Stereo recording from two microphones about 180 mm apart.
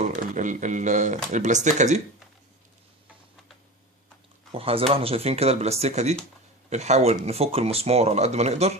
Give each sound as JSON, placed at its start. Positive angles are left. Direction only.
{"t": 0.0, "sound": "speech", "side_deg": -45}
{"t": 4.5, "sound": "speech", "side_deg": -30}